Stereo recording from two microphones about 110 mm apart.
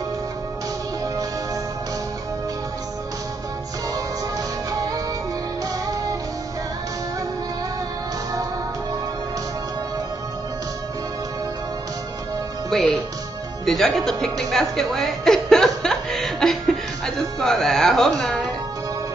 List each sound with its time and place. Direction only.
4.6 s music: 30° right (ahead or behind)
12.6 s music: 5° left (ahead or behind)
13.7 s speech: centre (ahead or behind)